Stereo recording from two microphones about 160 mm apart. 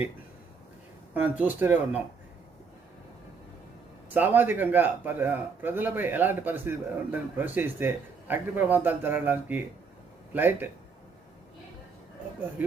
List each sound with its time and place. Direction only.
1.1 s a man's voice: 10° right (ahead or behind)
4.1 s a man's voice: 10° right (ahead or behind)